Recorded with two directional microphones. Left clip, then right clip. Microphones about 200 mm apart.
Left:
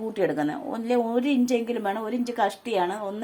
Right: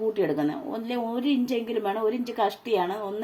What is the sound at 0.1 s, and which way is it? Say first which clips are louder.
A woman's voice: even; 20° left (ahead or behind).